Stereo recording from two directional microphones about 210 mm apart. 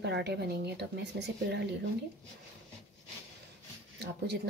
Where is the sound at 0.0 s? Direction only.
55° right (ahead or behind).